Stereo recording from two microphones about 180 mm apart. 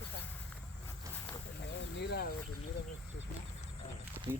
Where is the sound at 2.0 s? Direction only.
65° left (ahead or behind).